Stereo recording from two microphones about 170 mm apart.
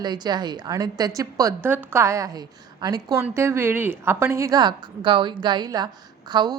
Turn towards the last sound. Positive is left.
turn(degrees=-25)  # may be behind; listen again after turning